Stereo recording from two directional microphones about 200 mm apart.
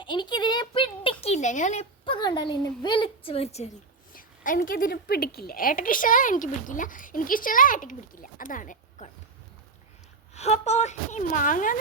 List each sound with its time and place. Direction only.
0.0 s speech: 25° left (ahead or behind)
4.1 s a woman's voice: 45° left (ahead or behind)
10.3 s speech: 35° left (ahead or behind)